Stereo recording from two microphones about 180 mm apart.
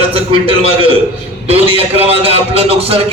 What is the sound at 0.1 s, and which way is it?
Speech, 30° right (ahead or behind).